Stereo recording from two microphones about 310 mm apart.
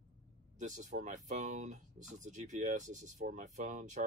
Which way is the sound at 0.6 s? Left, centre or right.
Right.